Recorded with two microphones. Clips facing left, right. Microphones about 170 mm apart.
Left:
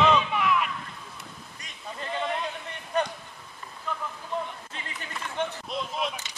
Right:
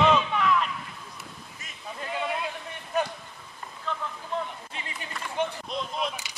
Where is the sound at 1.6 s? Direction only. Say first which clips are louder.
Even; 5° right (ahead or behind).